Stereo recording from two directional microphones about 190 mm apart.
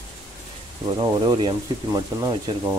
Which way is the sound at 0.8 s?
25° right (ahead or behind).